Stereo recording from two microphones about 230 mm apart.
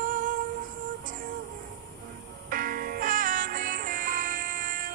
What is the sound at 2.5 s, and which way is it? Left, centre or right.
Music, right.